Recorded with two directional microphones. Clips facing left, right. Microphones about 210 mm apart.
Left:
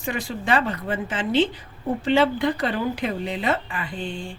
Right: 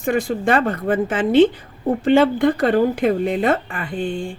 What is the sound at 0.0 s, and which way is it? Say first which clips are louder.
A woman's voice: right 9 dB; 50° right (ahead or behind).